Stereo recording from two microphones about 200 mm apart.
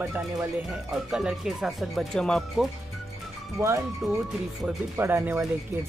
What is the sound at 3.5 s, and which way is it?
Speech, 15° right (ahead or behind).